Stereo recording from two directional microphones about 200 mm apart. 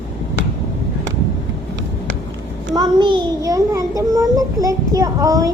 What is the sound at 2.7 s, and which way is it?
A child's voice, 20° right (ahead or behind).